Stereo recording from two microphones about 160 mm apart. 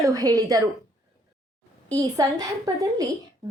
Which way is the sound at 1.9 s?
25° right (ahead or behind).